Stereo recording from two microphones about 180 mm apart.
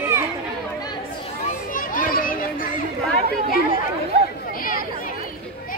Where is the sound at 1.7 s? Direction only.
50° left (ahead or behind).